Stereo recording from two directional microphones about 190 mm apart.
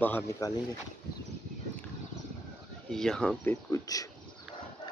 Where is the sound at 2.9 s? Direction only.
5° left (ahead or behind).